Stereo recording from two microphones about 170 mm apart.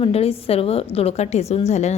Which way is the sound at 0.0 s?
35° left (ahead or behind).